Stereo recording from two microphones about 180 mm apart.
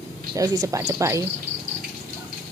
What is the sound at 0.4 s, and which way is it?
Speech, 20° right (ahead or behind).